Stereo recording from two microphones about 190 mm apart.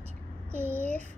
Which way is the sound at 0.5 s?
10° right (ahead or behind).